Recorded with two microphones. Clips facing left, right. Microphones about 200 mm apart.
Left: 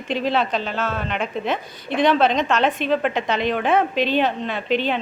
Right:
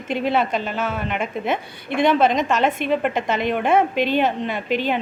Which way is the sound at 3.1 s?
50° right (ahead or behind).